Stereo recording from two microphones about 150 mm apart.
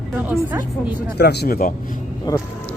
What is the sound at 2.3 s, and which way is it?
Speech, 30° left (ahead or behind).